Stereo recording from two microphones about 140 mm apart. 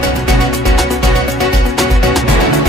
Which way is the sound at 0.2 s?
Centre (ahead or behind).